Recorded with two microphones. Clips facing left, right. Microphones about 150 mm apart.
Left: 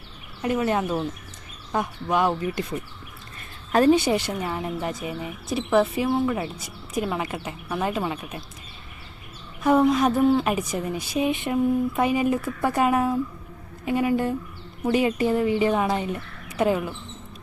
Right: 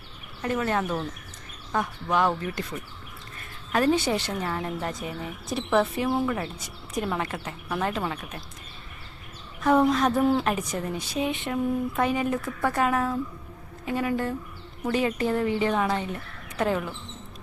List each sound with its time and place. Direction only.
0.4 s speech: 15° left (ahead or behind)
3.9 s speech: 15° left (ahead or behind)
9.6 s a woman's voice: 10° left (ahead or behind)